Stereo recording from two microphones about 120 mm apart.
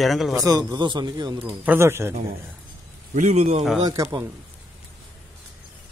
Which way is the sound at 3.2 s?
75° right (ahead or behind).